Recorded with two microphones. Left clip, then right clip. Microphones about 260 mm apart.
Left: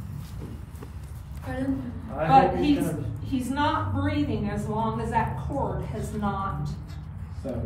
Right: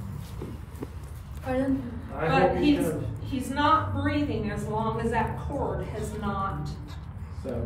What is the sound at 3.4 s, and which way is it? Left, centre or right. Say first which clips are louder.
A woman's voice: right 3 dB; centre.